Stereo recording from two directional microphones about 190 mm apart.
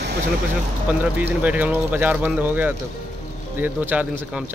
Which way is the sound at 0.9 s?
10° right (ahead or behind).